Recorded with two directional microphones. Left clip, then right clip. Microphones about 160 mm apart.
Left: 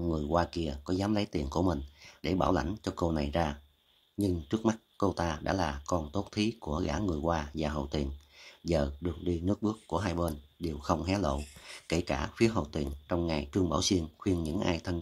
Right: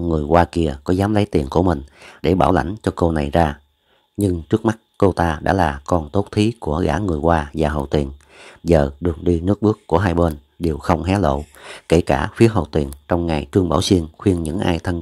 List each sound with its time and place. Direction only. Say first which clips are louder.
0.1 s speech: right 15 dB; 45° right (ahead or behind)